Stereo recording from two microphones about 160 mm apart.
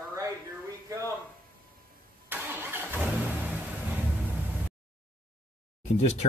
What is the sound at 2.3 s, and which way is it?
Vehicle, 15° right (ahead or behind).